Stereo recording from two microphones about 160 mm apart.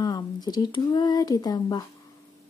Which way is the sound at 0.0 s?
25° left (ahead or behind).